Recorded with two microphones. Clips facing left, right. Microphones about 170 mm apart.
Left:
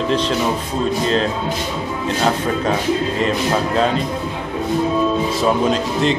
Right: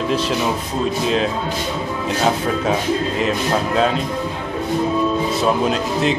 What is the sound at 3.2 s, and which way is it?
Speech, centre (ahead or behind).